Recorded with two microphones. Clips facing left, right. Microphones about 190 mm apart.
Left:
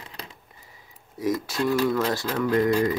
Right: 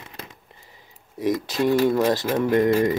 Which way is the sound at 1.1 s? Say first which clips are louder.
Right 3 dB; 20° right (ahead or behind).